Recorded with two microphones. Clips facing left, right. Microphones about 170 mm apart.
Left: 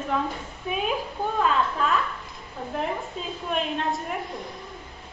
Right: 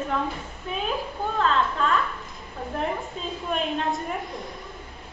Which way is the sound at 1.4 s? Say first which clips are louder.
Right 1 dB; 10° left (ahead or behind).